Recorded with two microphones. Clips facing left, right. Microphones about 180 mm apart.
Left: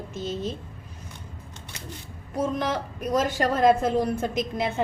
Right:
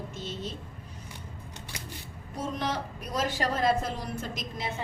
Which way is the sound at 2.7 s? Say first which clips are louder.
Left 7 dB; 50° left (ahead or behind).